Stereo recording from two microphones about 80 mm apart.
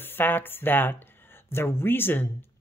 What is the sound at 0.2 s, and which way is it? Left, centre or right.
Speech, left.